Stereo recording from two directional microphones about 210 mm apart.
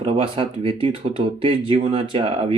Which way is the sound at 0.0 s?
25° right (ahead or behind).